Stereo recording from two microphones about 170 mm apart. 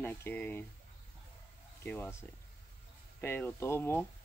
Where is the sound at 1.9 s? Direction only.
15° left (ahead or behind).